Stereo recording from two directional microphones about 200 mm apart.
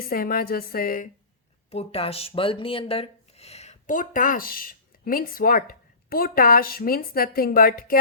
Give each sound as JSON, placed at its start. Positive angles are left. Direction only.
{"t": 0.0, "sound": "a woman's voice", "side_deg": 45}
{"t": 1.7, "sound": "speech", "side_deg": 30}